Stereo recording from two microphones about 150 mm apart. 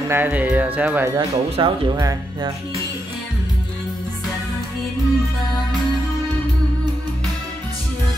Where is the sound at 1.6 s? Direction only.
30° right (ahead or behind).